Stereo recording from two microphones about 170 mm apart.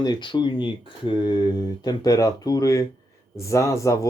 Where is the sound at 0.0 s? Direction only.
25° left (ahead or behind).